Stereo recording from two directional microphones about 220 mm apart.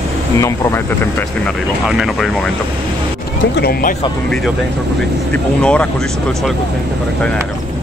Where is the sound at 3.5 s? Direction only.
45° left (ahead or behind).